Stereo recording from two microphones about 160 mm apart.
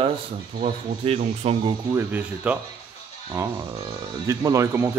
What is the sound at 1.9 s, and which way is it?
Speech, 10° right (ahead or behind).